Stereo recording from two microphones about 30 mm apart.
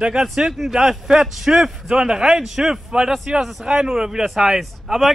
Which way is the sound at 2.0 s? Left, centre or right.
Right.